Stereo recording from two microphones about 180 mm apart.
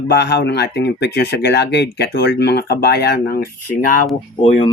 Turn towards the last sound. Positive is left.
turn(degrees=30)  # may be behind; listen again after turning